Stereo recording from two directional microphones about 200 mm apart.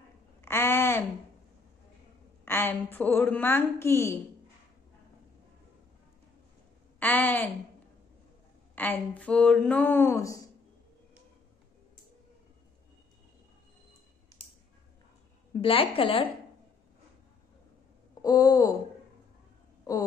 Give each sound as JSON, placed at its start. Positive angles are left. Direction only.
{"t": 0.4, "sound": "a sound", "side_deg": 10}
{"t": 2.4, "sound": "speech", "side_deg": 10}
{"t": 7.0, "sound": "speech", "side_deg": 10}
{"t": 8.7, "sound": "speech", "side_deg": 10}
{"t": 15.6, "sound": "a woman's voice", "side_deg": 25}
{"t": 18.2, "sound": "speech", "side_deg": 20}